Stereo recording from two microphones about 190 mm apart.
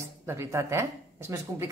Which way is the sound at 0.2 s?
15° right (ahead or behind).